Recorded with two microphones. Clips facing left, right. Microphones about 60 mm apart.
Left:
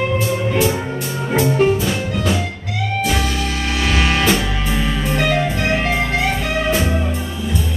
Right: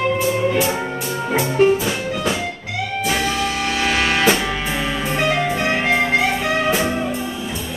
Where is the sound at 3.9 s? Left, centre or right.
Centre.